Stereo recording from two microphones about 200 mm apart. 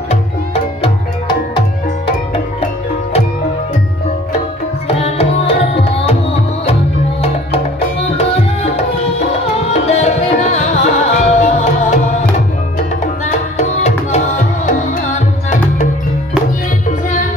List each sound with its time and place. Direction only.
4.8 s tabla: 30° left (ahead or behind)
6.6 s music: 30° left (ahead or behind)
8.2 s tabla: 30° left (ahead or behind)
9.7 s music: 35° left (ahead or behind)